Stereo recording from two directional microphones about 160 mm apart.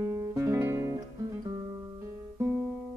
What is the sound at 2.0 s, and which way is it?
Guitar, 15° right (ahead or behind).